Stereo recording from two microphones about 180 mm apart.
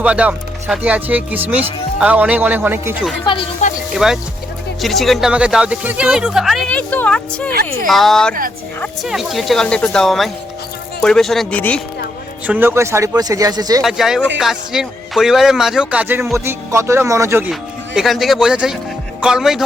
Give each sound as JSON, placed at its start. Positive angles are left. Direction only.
{"t": 0.0, "sound": "speech", "side_deg": -5}
{"t": 3.6, "sound": "speech", "side_deg": 40}
{"t": 3.9, "sound": "speech", "side_deg": 0}
{"t": 12.5, "sound": "speech", "side_deg": -10}
{"t": 13.8, "sound": "speech", "side_deg": 0}
{"t": 17.5, "sound": "speech", "side_deg": 0}